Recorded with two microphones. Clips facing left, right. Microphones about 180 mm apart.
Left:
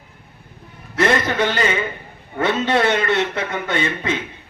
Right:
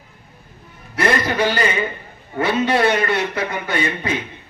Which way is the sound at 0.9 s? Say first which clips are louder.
Left 1 dB; 25° left (ahead or behind).